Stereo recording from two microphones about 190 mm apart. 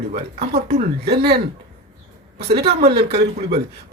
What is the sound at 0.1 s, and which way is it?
Speech, 35° right (ahead or behind).